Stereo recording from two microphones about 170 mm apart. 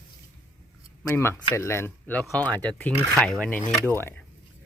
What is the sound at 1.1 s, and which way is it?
Speech, 15° left (ahead or behind).